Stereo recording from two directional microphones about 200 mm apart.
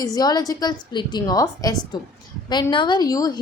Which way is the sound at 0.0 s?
20° left (ahead or behind).